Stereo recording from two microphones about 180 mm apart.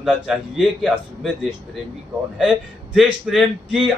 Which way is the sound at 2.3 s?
5° right (ahead or behind).